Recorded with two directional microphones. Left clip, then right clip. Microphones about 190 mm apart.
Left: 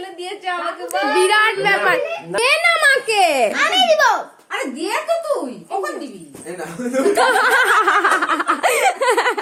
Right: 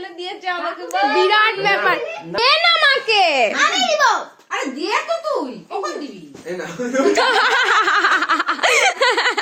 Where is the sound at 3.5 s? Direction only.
30° left (ahead or behind).